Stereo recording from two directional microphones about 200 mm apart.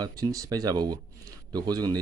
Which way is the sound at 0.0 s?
20° right (ahead or behind).